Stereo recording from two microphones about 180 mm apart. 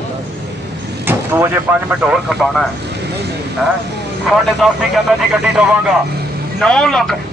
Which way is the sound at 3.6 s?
Centre (ahead or behind).